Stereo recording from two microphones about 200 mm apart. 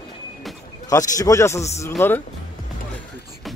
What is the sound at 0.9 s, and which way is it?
Speech, 15° left (ahead or behind).